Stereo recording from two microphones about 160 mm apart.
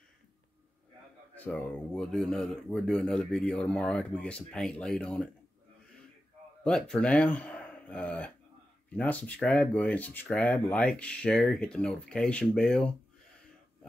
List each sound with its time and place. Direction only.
1.3 s speech: 10° left (ahead or behind)
6.6 s speech: 5° left (ahead or behind)